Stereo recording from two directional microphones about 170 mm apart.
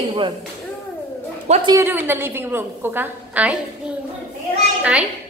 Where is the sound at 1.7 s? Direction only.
15° right (ahead or behind).